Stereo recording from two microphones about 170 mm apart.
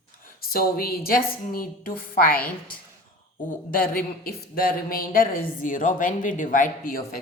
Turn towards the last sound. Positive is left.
turn(degrees=60)  # may be behind; listen again after turning